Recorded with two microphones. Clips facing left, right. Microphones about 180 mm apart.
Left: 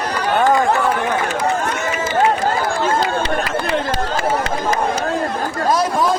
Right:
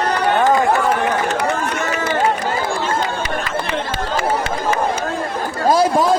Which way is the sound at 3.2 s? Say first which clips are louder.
Left 2 dB; 35° left (ahead or behind).